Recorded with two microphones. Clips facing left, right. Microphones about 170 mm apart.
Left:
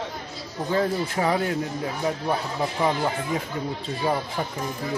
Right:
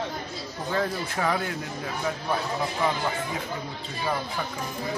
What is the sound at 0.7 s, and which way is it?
Speech, 25° left (ahead or behind).